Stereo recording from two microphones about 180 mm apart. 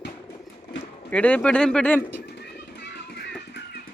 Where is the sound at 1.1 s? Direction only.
5° left (ahead or behind).